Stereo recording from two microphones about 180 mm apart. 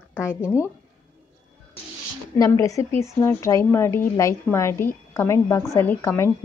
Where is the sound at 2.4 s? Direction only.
20° left (ahead or behind).